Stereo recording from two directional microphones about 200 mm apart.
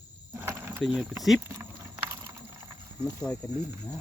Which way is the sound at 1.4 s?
15° right (ahead or behind).